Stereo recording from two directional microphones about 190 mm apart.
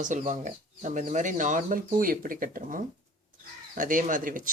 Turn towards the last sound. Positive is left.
turn(degrees=-45)  # may be behind; listen again after turning